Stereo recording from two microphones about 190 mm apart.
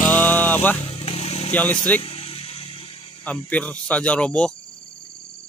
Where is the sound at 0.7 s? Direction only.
30° left (ahead or behind).